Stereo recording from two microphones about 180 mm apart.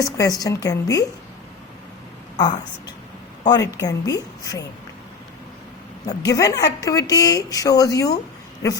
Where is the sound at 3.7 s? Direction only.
20° left (ahead or behind).